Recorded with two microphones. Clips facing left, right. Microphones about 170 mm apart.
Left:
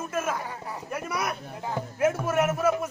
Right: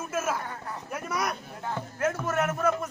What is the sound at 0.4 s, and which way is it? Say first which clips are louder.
Music: left 1 dB; 10° left (ahead or behind).